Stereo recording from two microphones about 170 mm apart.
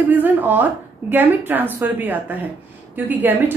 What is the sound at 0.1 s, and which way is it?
A woman's voice, 10° right (ahead or behind).